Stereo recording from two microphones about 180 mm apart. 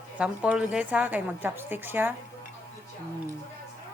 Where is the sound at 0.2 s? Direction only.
5° right (ahead or behind).